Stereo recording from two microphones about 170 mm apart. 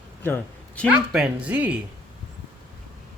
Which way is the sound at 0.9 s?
10° right (ahead or behind).